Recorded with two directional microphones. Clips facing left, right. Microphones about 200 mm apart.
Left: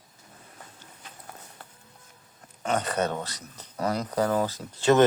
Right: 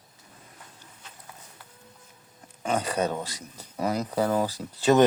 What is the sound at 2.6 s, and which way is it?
Speech, 10° right (ahead or behind).